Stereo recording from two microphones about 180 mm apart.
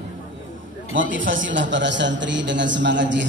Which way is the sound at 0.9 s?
90° right.